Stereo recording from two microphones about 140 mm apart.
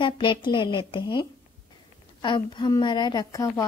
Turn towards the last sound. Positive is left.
turn(degrees=25)  # may be behind; listen again after turning